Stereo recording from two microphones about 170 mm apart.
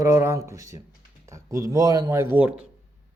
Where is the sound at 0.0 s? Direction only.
15° right (ahead or behind).